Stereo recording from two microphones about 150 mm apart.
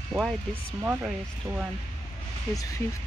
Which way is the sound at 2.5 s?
25° left (ahead or behind).